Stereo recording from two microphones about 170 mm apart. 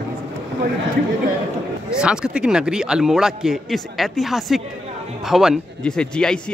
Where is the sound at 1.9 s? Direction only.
5° right (ahead or behind).